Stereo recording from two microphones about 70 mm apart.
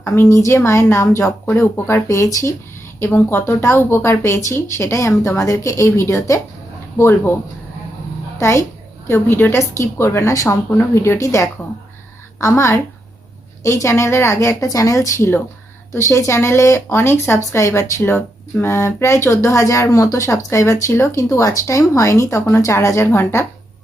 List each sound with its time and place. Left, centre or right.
0.2 s a woman's voice: left
2.0 s speech: left
3.0 s speech: left
7.0 s a woman's voice: left
8.4 s speech: left
9.0 s a woman's voice: left
10.8 s a woman's voice: left
18.6 s speech: left